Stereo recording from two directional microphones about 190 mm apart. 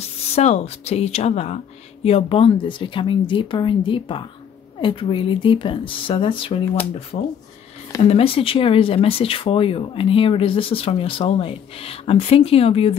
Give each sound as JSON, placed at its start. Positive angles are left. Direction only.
{"t": 0.0, "sound": "speech", "side_deg": 35}
{"t": 7.1, "sound": "speech", "side_deg": 45}
{"t": 8.0, "sound": "speech", "side_deg": 30}